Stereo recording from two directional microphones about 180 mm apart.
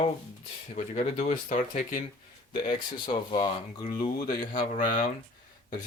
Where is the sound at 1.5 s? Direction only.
45° left (ahead or behind).